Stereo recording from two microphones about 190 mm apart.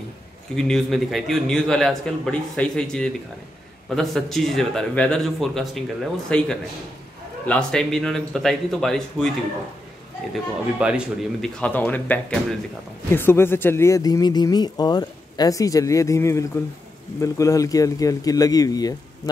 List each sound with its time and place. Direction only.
0.6 s a man's voice: centre (ahead or behind)
10.3 s a man's voice: 5° right (ahead or behind)
11.6 s speech: 10° left (ahead or behind)